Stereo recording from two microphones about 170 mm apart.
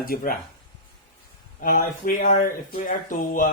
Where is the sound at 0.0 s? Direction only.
60° left (ahead or behind).